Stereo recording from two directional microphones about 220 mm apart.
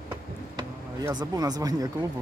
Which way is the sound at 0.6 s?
20° right (ahead or behind).